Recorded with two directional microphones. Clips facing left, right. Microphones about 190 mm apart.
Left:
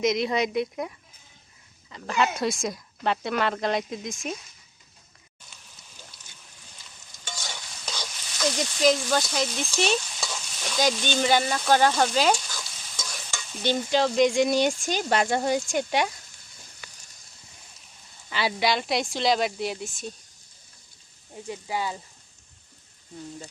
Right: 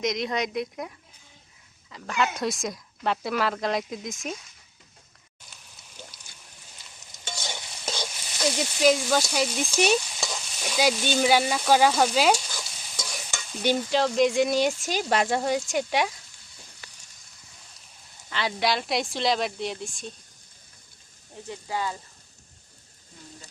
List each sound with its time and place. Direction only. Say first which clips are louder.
0.0 s speech: left 3 dB; 5° left (ahead or behind)
7.0 s stir: right 2 dB; 20° right (ahead or behind)
8.4 s speech: even; 10° right (ahead or behind)
9.7 s sizzle: right 3 dB; 15° right (ahead or behind)
13.9 s speech: left 2 dB; centre (ahead or behind)
18.3 s speech: left 1 dB; 5° left (ahead or behind)
21.4 s speech: left 1 dB; 10° left (ahead or behind)